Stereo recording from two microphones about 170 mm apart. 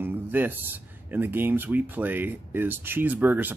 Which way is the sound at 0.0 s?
10° right (ahead or behind).